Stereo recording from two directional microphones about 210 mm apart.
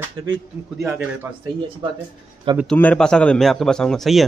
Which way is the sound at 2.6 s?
5° left (ahead or behind).